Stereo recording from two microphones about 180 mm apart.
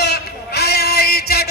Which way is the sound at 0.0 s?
65° left (ahead or behind).